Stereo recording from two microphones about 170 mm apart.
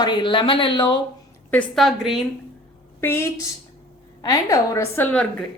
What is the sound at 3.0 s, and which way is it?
A woman's voice, 15° left (ahead or behind).